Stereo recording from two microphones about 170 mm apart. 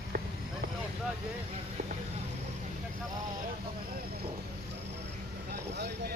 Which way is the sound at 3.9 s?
65° right (ahead or behind).